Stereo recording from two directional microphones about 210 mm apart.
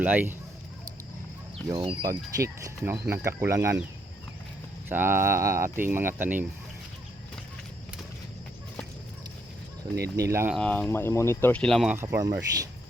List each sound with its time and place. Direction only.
0.0 s speech: 10° right (ahead or behind)
1.6 s speech: 20° right (ahead or behind)
4.9 s speech: 10° right (ahead or behind)
10.2 s speech: 15° right (ahead or behind)
10.5 s speech: 5° left (ahead or behind)
11.9 s speech: 15° right (ahead or behind)